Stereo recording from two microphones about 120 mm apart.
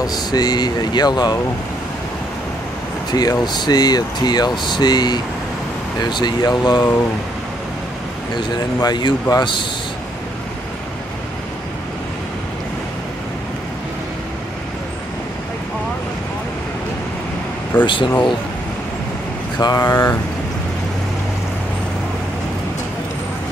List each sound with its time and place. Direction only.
0.0 s speech: 35° left (ahead or behind)
3.1 s speech: 35° left (ahead or behind)
8.4 s speech: 40° left (ahead or behind)
17.8 s speech: 45° left (ahead or behind)
19.6 s speech: 30° left (ahead or behind)